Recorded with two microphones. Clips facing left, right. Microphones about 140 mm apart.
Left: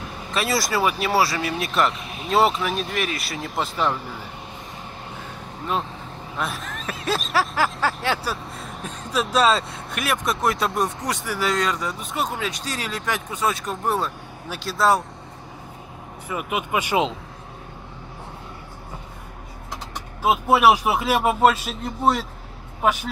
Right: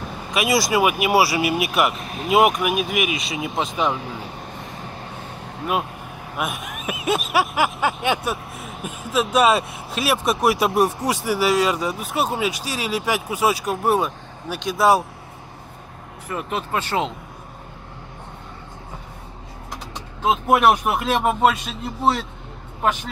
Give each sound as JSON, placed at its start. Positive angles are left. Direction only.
{"t": 0.3, "sound": "speech", "side_deg": -15}
{"t": 3.2, "sound": "a man's voice", "side_deg": 0}
{"t": 3.5, "sound": "speech", "side_deg": -15}
{"t": 6.3, "sound": "speech", "side_deg": -15}
{"t": 8.5, "sound": "vehicle", "side_deg": -5}
{"t": 9.3, "sound": "speech", "side_deg": -20}
{"t": 16.3, "sound": "speech", "side_deg": 5}
{"t": 20.5, "sound": "a man's voice", "side_deg": 5}